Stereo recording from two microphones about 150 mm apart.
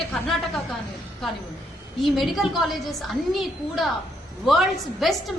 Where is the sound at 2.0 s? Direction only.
Centre (ahead or behind).